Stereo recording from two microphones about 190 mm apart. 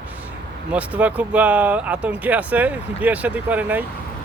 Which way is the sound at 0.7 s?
5° right (ahead or behind).